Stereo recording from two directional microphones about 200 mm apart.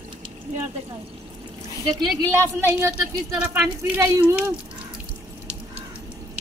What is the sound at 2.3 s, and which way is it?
A woman's voice, 10° right (ahead or behind).